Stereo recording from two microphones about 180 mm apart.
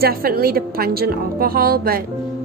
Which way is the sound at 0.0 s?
55° right (ahead or behind).